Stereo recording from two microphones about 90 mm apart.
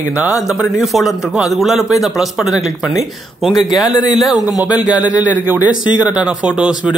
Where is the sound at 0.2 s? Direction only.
10° right (ahead or behind).